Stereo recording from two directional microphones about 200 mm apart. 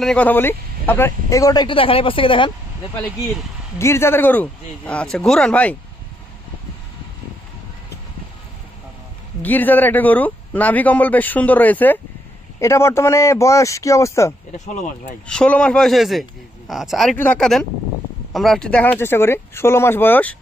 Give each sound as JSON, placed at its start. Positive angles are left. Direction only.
{"t": 0.0, "sound": "a man's voice", "side_deg": 5}
{"t": 3.7, "sound": "a man's voice", "side_deg": 15}
{"t": 9.4, "sound": "a man's voice", "side_deg": 10}